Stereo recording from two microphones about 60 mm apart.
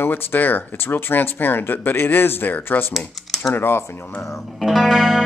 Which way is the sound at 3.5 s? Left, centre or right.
Left.